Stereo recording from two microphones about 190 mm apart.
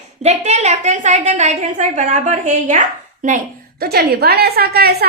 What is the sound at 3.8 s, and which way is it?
A woman's voice, 55° right (ahead or behind).